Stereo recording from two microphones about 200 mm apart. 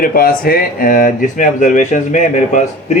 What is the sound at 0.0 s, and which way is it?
Speech, 45° left (ahead or behind).